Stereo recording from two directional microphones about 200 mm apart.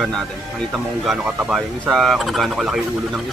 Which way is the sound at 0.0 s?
Centre (ahead or behind).